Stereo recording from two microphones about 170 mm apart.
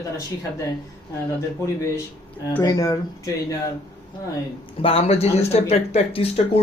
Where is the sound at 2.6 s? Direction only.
20° left (ahead or behind).